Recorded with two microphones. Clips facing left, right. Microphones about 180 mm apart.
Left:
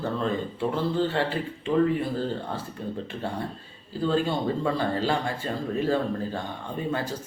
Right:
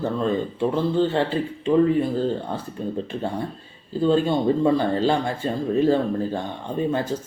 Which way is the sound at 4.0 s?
20° right (ahead or behind).